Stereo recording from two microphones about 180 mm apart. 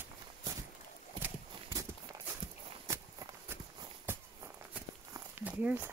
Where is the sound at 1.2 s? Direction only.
20° right (ahead or behind).